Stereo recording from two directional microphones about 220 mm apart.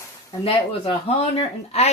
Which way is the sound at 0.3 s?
25° left (ahead or behind).